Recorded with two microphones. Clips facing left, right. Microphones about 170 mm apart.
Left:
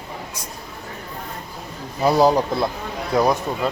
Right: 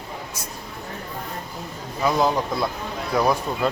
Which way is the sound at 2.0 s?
35° left (ahead or behind).